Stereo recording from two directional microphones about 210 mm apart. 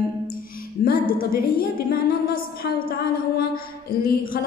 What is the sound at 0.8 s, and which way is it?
A woman's voice, 45° left (ahead or behind).